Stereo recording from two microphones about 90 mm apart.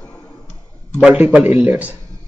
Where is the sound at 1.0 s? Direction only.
10° right (ahead or behind).